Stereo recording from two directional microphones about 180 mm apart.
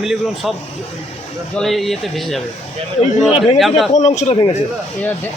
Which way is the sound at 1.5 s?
Centre (ahead or behind).